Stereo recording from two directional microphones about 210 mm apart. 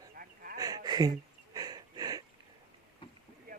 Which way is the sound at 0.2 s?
45° right (ahead or behind).